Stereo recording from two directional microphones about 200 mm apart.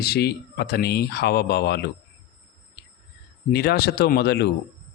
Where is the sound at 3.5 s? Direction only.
50° left (ahead or behind).